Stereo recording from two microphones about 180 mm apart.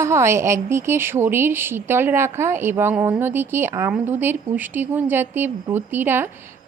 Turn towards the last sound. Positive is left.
turn(degrees=-10)  # may be behind; listen again after turning